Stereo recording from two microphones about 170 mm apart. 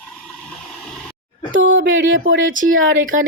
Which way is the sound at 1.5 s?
90° right.